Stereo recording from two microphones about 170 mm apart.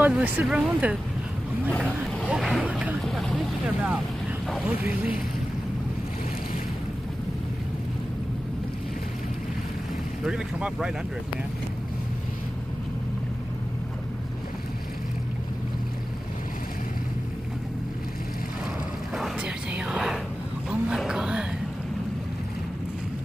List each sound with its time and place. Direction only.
0.0 s speech: 10° right (ahead or behind)
1.8 s boat: 10° right (ahead or behind)
4.6 s speech: 10° right (ahead or behind)
10.2 s speech: 5° right (ahead or behind)
19.1 s whispering: 5° right (ahead or behind)
20.9 s a sound: 5° right (ahead or behind)